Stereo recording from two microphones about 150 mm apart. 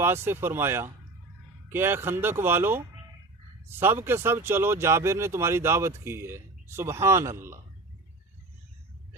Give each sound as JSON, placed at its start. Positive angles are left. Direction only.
{"t": 0.0, "sound": "speech", "side_deg": -15}